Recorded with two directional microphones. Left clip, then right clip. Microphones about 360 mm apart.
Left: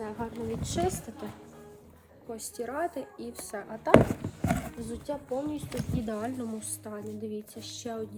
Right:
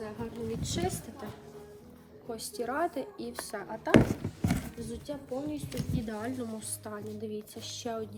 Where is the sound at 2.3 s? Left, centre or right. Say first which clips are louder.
Right 1 dB; centre.